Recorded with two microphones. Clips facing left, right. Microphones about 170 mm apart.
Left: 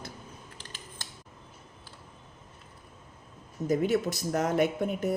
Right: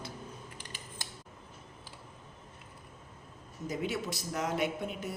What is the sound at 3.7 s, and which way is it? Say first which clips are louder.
Speech: left 9 dB; 45° left (ahead or behind).